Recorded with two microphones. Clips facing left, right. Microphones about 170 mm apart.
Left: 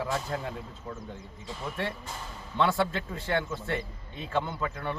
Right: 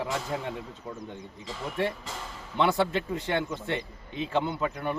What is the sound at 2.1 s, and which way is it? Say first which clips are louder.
Speech: right 2 dB; 90° right.